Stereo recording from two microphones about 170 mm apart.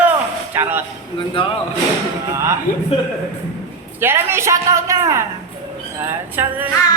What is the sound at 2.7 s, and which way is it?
Speech, 55° left (ahead or behind).